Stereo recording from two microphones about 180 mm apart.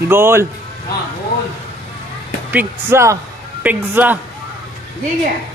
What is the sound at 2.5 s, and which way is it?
Speech, 10° right (ahead or behind).